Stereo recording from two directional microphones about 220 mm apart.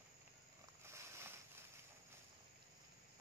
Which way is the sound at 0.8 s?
10° right (ahead or behind).